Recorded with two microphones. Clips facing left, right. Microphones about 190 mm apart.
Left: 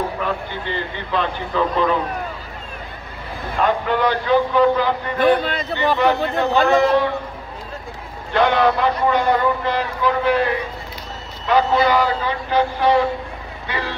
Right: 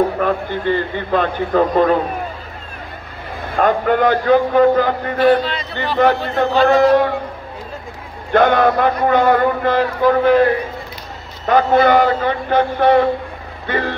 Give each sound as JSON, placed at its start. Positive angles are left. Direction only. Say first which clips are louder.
{"t": 0.2, "sound": "a man's voice", "louder": "right 6 dB", "side_deg": -50}
{"t": 3.5, "sound": "a man's voice", "louder": "right 4 dB", "side_deg": -50}
{"t": 5.2, "sound": "speech", "louder": "right 3 dB", "side_deg": 50}
{"t": 5.9, "sound": "a man's voice", "louder": "right 7 dB", "side_deg": -50}
{"t": 8.3, "sound": "a man's voice", "louder": "right 3 dB", "side_deg": -50}
{"t": 11.4, "sound": "a man's voice", "louder": "right 4 dB", "side_deg": -50}